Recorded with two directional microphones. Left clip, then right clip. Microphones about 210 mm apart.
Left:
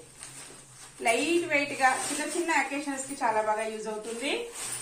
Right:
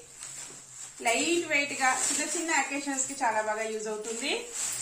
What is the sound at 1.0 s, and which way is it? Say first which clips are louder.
Speech: left 1 dB; 15° right (ahead or behind).